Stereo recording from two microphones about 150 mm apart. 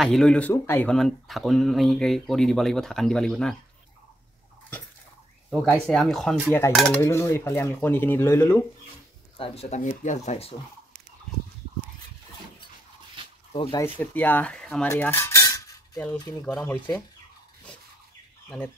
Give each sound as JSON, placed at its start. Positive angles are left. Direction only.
{"t": 0.0, "sound": "speech", "side_deg": 5}
{"t": 0.9, "sound": "speech", "side_deg": 0}
{"t": 5.5, "sound": "speech", "side_deg": -5}
{"t": 7.0, "sound": "speech", "side_deg": 20}
{"t": 9.4, "sound": "speech", "side_deg": 45}
{"t": 13.5, "sound": "speech", "side_deg": 35}
{"t": 13.9, "sound": "speech", "side_deg": 10}
{"t": 14.9, "sound": "cutlery", "side_deg": 15}
{"t": 16.4, "sound": "speech", "side_deg": 10}